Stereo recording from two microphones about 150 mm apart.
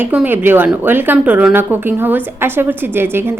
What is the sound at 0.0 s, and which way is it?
A woman's voice, 10° right (ahead or behind).